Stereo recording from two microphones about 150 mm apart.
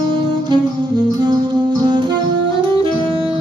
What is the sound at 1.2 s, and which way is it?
Music, 30° right (ahead or behind).